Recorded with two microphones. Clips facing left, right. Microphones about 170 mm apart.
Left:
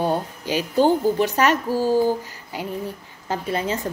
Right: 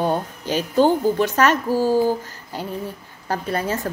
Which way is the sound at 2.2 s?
15° left (ahead or behind).